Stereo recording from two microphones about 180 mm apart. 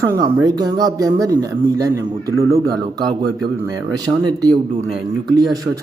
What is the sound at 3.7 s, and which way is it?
A man's voice, 20° right (ahead or behind).